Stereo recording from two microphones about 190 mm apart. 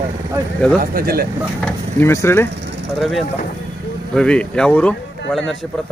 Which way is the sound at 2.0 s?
15° left (ahead or behind).